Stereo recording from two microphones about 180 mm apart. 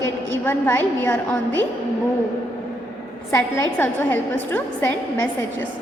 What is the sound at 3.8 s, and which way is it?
A woman's voice, 10° left (ahead or behind).